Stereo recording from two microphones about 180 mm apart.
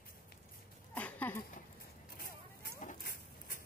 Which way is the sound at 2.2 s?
55° left (ahead or behind).